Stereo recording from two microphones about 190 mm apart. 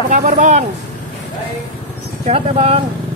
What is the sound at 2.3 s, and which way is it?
Speech, 30° right (ahead or behind).